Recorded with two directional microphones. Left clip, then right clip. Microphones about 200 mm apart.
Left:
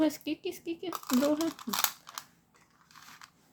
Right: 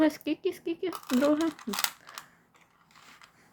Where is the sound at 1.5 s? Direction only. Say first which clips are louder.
Even; 25° left (ahead or behind).